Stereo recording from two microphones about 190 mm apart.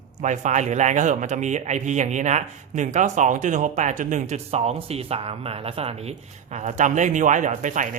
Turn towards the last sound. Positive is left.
turn(degrees=-40)  # may be behind; listen again after turning